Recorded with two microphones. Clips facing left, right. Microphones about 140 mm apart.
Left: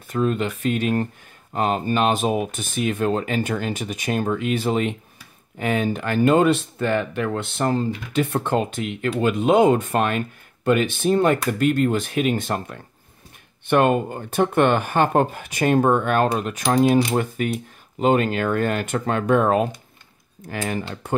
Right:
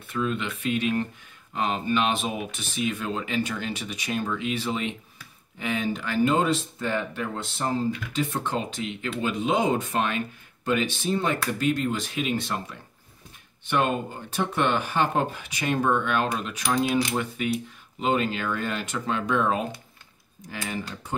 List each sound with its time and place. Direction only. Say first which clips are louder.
0.1 s speech: left 6 dB; 40° left (ahead or behind); by 21.1 s 60° left (ahead or behind)